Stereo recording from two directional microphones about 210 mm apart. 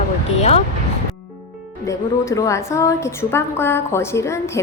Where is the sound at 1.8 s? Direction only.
15° left (ahead or behind).